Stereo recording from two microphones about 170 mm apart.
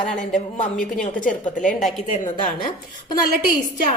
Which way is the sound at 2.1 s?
45° left (ahead or behind).